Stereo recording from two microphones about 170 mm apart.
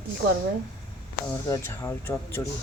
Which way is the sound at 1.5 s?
15° left (ahead or behind).